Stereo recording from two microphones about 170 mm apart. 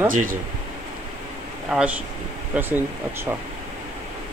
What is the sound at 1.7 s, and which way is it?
Speech, 5° right (ahead or behind).